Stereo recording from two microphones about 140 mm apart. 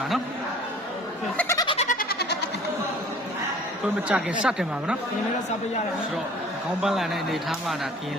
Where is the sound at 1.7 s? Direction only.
65° left (ahead or behind).